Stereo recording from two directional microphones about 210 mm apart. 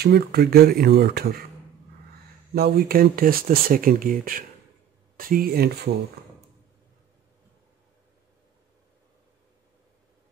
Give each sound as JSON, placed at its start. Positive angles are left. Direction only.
{"t": 0.0, "sound": "speech", "side_deg": -50}
{"t": 2.5, "sound": "speech", "side_deg": -50}